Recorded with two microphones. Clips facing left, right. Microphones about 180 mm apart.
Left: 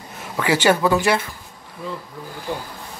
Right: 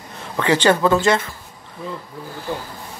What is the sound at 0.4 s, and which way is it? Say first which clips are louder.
Speech: right 1 dB; 10° left (ahead or behind).